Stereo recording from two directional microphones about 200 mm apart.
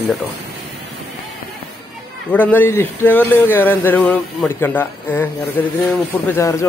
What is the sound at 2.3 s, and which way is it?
A man's voice, 10° left (ahead or behind).